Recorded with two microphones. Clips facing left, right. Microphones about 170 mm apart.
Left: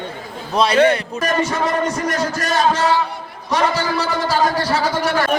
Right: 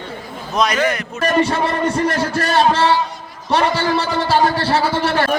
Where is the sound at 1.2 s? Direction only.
30° right (ahead or behind).